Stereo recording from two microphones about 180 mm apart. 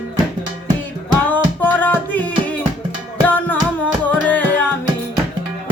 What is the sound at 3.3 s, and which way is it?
Music, 10° left (ahead or behind).